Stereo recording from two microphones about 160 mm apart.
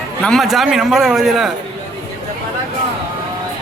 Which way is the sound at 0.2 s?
5° left (ahead or behind).